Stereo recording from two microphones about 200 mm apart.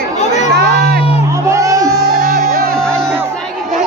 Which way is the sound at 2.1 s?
40° right (ahead or behind).